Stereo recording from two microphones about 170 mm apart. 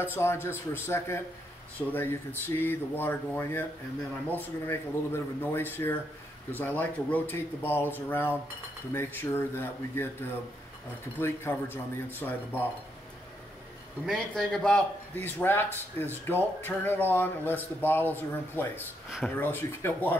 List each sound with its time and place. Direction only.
0.0 s a man's voice: 15° left (ahead or behind)
11.1 s a man's voice: 15° left (ahead or behind)
14.0 s a man's voice: 5° left (ahead or behind)